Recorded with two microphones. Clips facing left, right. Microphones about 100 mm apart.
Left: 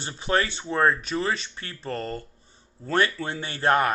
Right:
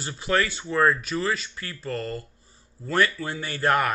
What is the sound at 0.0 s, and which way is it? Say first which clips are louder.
Speech: even; 25° left (ahead or behind).